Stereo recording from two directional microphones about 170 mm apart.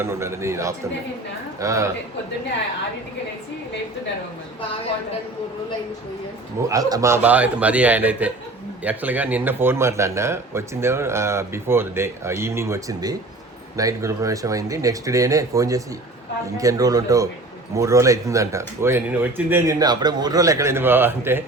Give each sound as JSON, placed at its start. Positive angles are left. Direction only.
{"t": 0.0, "sound": "a man's voice", "side_deg": -15}
{"t": 6.7, "sound": "a man's voice", "side_deg": -20}